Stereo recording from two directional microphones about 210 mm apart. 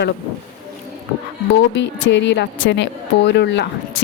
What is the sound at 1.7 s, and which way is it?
A woman's voice, 60° left (ahead or behind).